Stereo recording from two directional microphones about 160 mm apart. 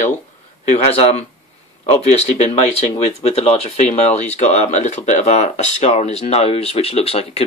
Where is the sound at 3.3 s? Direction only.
40° left (ahead or behind).